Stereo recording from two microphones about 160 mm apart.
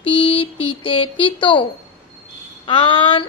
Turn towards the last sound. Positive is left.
turn(degrees=30)  # may be behind; listen again after turning